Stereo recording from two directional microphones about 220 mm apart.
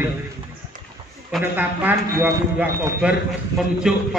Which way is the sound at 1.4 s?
10° right (ahead or behind).